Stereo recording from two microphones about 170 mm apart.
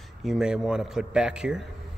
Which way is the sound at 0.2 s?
5° right (ahead or behind).